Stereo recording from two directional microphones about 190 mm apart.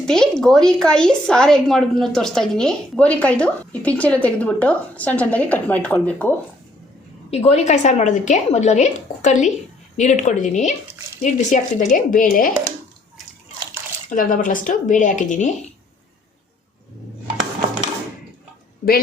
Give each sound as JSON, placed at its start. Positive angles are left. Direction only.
{"t": 0.0, "sound": "a woman's voice", "side_deg": 5}
{"t": 7.3, "sound": "a woman's voice", "side_deg": 35}
{"t": 14.1, "sound": "speech", "side_deg": 45}